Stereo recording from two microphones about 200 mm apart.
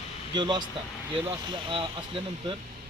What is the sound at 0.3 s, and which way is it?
Speech, 20° right (ahead or behind).